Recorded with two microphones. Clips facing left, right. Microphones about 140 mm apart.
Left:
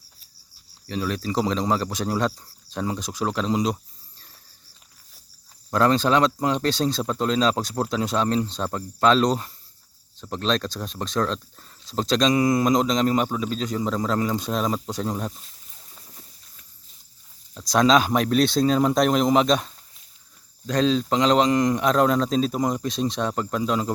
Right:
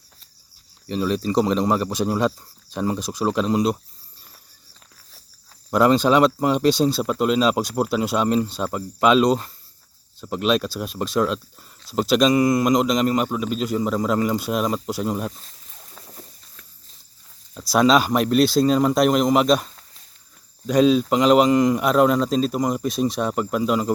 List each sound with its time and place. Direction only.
0.9 s speech: 20° right (ahead or behind)
5.7 s speech: 10° right (ahead or behind)
15.4 s a sound: 75° right (ahead or behind)
17.5 s speech: 5° right (ahead or behind)